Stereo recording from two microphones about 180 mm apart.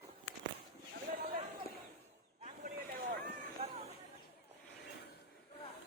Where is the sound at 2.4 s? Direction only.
40° right (ahead or behind).